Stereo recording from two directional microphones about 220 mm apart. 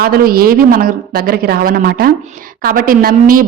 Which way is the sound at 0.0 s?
45° right (ahead or behind).